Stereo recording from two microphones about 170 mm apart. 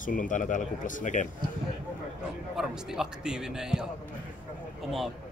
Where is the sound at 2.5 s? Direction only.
5° right (ahead or behind).